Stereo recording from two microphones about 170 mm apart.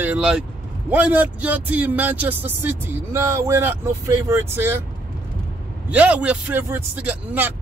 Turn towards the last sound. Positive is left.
turn(degrees=-10)  # may be behind; listen again after turning